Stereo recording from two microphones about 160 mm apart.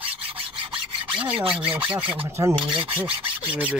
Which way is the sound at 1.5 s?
5° right (ahead or behind).